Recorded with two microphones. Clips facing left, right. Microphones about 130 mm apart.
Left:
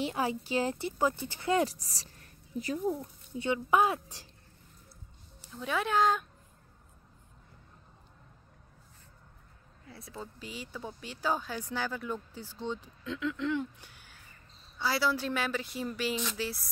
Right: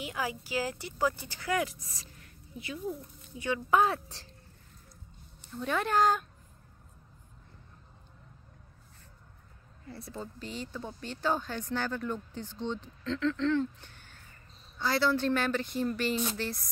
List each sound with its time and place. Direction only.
0.0 s a woman's voice: 30° left (ahead or behind)
3.3 s speech: 25° left (ahead or behind)
5.4 s a woman's voice: 5° left (ahead or behind)
9.8 s a woman's voice: centre (ahead or behind)